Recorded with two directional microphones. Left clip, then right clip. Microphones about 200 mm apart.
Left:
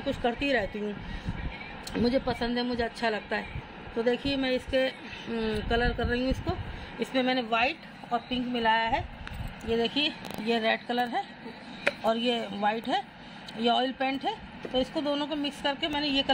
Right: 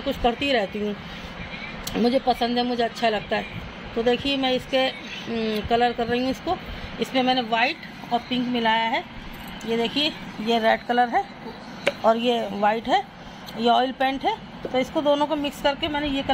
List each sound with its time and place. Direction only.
0.0 s speech: centre (ahead or behind)
2.0 s speech: centre (ahead or behind)